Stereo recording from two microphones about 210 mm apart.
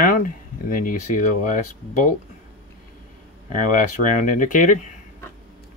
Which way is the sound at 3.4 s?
35° left (ahead or behind).